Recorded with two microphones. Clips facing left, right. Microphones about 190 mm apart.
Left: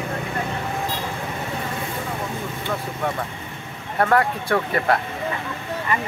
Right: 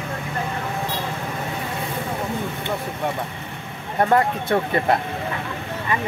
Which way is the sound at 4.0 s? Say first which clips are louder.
Right 1 dB; 20° right (ahead or behind).